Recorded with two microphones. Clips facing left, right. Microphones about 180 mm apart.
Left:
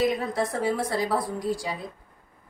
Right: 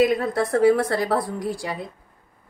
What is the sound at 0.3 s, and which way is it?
Speech, 65° right (ahead or behind).